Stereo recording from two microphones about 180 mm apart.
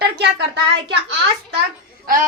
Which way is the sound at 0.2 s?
70° right (ahead or behind).